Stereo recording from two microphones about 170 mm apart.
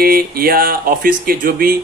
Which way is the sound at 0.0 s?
60° right (ahead or behind).